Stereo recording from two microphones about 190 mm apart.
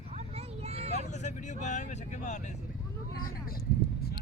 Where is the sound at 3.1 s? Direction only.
50° left (ahead or behind).